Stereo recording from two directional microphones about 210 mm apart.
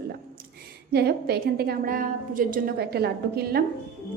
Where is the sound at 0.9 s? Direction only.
50° right (ahead or behind).